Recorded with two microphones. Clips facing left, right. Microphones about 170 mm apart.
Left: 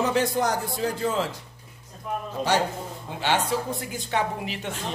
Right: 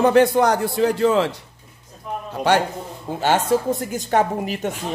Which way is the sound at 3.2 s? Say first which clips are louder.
Right 6 dB; 45° right (ahead or behind).